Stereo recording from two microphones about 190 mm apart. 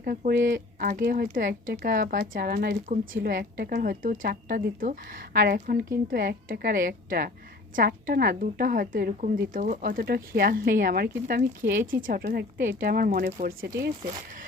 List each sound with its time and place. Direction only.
0.0 s speech: 50° right (ahead or behind)